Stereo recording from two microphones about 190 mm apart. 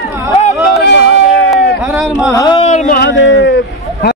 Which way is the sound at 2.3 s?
20° left (ahead or behind).